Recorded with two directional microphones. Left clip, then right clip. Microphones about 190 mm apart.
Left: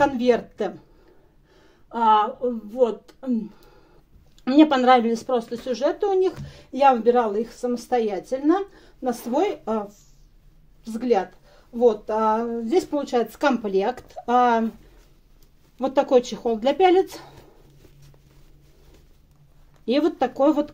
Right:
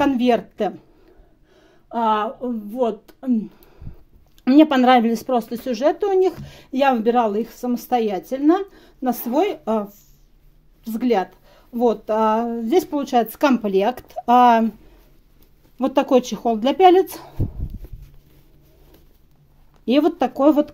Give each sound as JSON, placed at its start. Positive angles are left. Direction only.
{"t": 0.0, "sound": "speech", "side_deg": -30}
{"t": 15.8, "sound": "speech", "side_deg": -30}
{"t": 19.8, "sound": "speech", "side_deg": -30}